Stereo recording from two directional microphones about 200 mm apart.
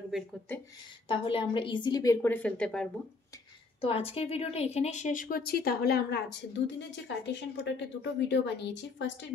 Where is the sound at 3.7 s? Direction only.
30° left (ahead or behind); by 9.1 s 60° left (ahead or behind).